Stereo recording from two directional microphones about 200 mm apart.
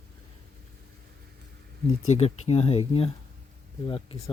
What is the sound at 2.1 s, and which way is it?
Speech, 30° left (ahead or behind).